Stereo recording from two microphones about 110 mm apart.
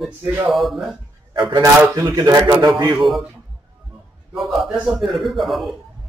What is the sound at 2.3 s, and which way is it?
Speech, 25° right (ahead or behind).